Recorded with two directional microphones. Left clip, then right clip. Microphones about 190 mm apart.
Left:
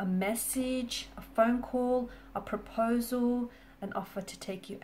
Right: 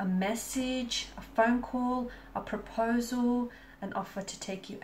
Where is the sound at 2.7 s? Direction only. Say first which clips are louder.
Even; 45° left (ahead or behind).